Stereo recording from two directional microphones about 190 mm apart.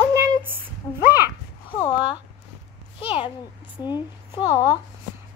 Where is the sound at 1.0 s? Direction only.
10° right (ahead or behind).